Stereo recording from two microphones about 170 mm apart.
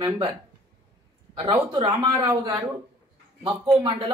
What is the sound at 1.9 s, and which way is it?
Speech, 20° right (ahead or behind).